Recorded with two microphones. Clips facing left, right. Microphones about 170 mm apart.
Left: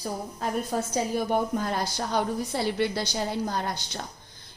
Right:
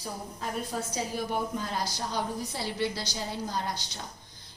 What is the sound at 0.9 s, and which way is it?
A woman's voice, 50° left (ahead or behind).